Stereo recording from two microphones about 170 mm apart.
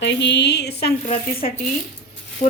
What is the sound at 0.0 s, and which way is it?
Speech, 90° left.